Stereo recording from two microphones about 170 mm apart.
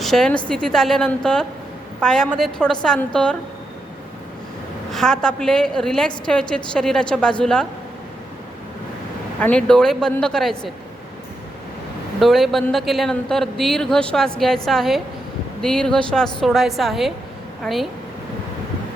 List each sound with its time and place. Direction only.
0.0 s speech: centre (ahead or behind)
4.9 s speech: centre (ahead or behind)
9.4 s speech: 5° left (ahead or behind)
12.2 s speech: centre (ahead or behind)